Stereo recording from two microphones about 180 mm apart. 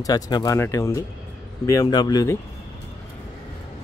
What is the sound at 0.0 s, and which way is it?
Speech, 20° left (ahead or behind).